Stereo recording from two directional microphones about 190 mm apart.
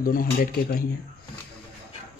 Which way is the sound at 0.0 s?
50° left (ahead or behind).